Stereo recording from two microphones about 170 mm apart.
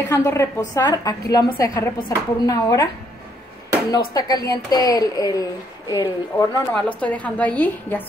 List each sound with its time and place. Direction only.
0.1 s a woman's voice: 15° left (ahead or behind)
4.1 s a woman's voice: 20° left (ahead or behind)